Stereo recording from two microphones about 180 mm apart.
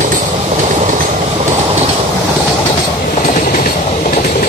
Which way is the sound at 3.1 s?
50° left (ahead or behind).